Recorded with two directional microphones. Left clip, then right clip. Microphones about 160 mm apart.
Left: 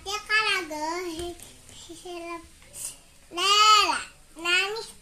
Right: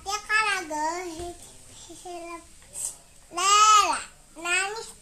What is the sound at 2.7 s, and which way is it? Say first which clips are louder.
Babbling: right 3 dB; 20° right (ahead or behind).